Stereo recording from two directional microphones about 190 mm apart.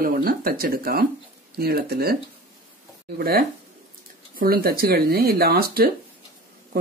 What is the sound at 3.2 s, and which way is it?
A man's voice, 50° right (ahead or behind).